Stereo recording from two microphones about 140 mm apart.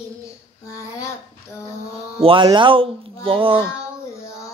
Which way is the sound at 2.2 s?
35° right (ahead or behind).